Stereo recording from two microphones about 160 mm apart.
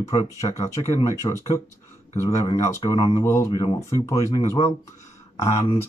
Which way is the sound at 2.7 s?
20° left (ahead or behind).